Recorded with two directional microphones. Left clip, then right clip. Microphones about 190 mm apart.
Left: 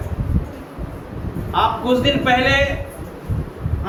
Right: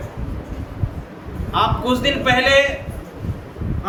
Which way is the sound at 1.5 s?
55° right (ahead or behind).